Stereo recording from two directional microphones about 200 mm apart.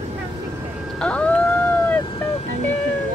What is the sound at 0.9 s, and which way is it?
Ice cream truck, 5° left (ahead or behind).